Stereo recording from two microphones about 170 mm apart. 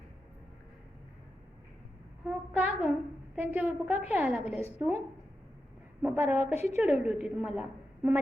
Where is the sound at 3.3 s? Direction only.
10° right (ahead or behind).